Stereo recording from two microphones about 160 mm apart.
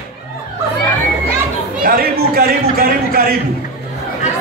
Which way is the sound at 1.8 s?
70° right (ahead or behind).